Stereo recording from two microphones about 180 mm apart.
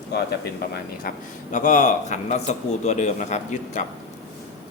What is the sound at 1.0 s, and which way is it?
A man's voice, 45° left (ahead or behind).